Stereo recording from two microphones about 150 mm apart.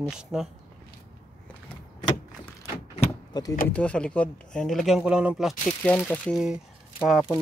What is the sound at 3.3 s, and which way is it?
Speech, 25° left (ahead or behind).